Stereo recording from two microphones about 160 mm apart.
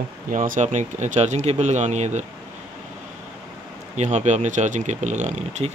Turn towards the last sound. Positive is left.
turn(degrees=-45)  # may be behind; listen again after turning